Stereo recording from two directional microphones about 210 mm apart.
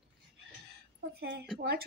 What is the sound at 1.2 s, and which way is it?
Speech, 50° right (ahead or behind).